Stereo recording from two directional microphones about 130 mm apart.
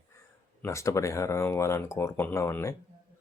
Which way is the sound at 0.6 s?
25° left (ahead or behind).